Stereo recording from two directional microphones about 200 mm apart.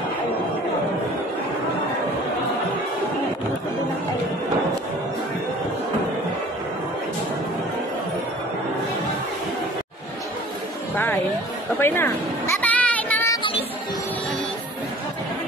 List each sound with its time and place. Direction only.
11.8 s music: 10° left (ahead or behind)
13.4 s music: 25° left (ahead or behind)